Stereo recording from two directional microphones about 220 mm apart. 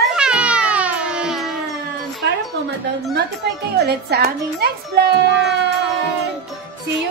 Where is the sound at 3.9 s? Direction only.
45° right (ahead or behind).